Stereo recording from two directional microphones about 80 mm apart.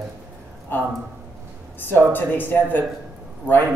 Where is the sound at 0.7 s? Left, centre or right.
Left.